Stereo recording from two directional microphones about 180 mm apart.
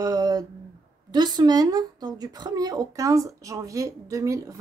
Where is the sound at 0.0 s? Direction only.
20° right (ahead or behind).